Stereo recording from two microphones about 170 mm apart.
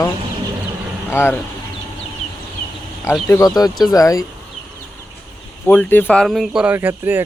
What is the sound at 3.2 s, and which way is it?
Speech, 20° left (ahead or behind).